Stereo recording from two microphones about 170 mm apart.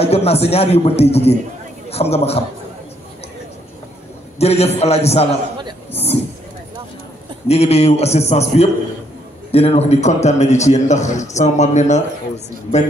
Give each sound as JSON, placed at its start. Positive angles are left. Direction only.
{"t": 0.0, "sound": "a man's voice", "side_deg": 35}
{"t": 4.4, "sound": "a man's voice", "side_deg": 40}
{"t": 7.4, "sound": "a man's voice", "side_deg": 40}